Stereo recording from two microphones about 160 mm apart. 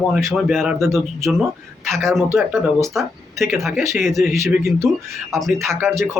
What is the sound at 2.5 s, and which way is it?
Speech, 20° right (ahead or behind).